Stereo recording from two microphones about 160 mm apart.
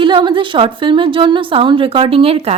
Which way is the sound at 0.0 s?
30° right (ahead or behind).